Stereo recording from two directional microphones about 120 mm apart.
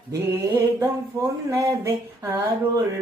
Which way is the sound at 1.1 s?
30° right (ahead or behind).